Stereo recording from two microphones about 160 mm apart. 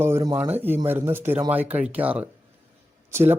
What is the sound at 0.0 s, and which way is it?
Speech, 15° right (ahead or behind).